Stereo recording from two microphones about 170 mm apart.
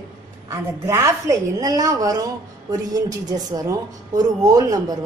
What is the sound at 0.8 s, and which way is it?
Speech, 15° right (ahead or behind).